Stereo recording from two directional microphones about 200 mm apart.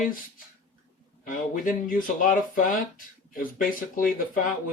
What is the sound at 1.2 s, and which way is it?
Speech, 40° left (ahead or behind).